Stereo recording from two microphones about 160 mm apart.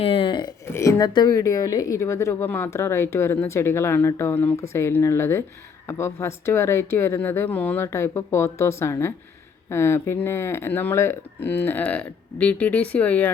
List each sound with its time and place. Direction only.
0.0 s speech: 35° left (ahead or behind)
0.7 s a woman's voice: 20° left (ahead or behind)